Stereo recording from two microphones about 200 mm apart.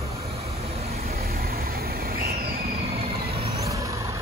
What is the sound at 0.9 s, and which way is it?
Vehicle, 50° right (ahead or behind).